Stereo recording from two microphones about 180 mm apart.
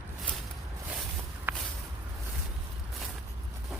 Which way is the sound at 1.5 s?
10° right (ahead or behind).